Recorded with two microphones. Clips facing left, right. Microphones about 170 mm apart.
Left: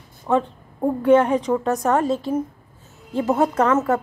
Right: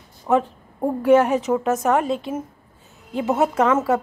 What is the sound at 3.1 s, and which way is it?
Speech, centre (ahead or behind).